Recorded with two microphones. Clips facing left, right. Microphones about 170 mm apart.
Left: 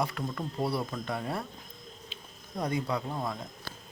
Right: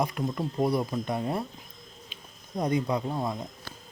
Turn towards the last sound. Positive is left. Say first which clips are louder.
# right 4 dB
turn(degrees=-15)  # may be behind; listen again after turning